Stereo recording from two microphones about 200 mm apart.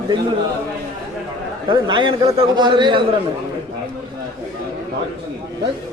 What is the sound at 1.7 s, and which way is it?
A man's voice, 25° right (ahead or behind).